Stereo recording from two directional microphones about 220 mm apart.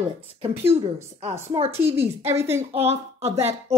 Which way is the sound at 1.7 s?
10° right (ahead or behind).